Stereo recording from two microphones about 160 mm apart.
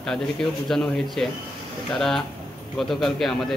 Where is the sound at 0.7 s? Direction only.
Centre (ahead or behind).